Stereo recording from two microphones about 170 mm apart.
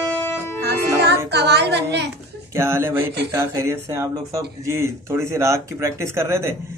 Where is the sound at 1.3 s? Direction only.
80° right.